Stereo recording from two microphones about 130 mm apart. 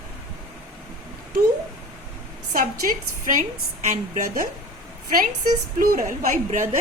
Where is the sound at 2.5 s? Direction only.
90° right.